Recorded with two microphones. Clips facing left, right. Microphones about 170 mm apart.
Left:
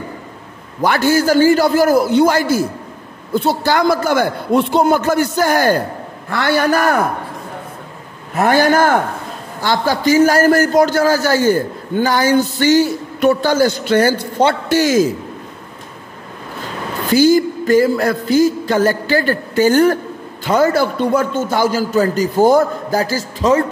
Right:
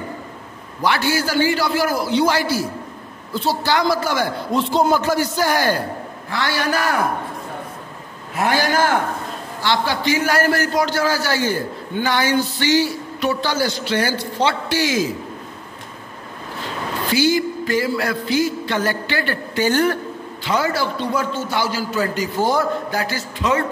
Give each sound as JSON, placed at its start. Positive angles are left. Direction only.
{"t": 0.8, "sound": "a man's voice", "side_deg": 45}
{"t": 8.4, "sound": "a man's voice", "side_deg": 50}
{"t": 17.0, "sound": "a man's voice", "side_deg": 45}